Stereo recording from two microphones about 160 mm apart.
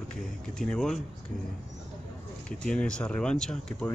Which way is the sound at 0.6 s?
5° left (ahead or behind).